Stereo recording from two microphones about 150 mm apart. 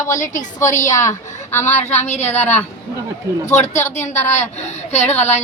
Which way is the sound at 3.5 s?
50° left (ahead or behind).